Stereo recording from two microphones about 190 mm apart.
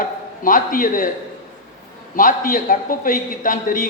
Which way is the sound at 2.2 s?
45° left (ahead or behind).